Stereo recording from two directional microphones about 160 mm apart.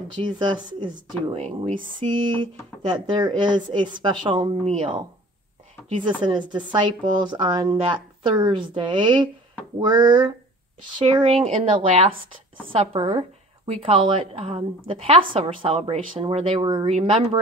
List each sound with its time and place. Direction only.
0.2 s a woman's voice: 30° right (ahead or behind)
2.9 s a woman's voice: 30° right (ahead or behind)